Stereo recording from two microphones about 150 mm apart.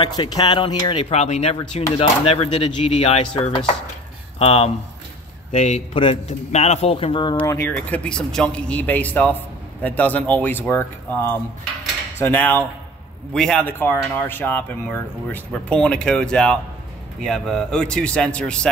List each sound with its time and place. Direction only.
0.0 s speech: 30° left (ahead or behind)
1.1 s speech: 50° left (ahead or behind)
2.0 s chopping: 40° left (ahead or behind)
4.4 s speech: 40° left (ahead or behind)
6.2 s chopping: 50° left (ahead or behind); by 7.4 s 30° left (ahead or behind)
7.4 s speech: 15° left (ahead or behind)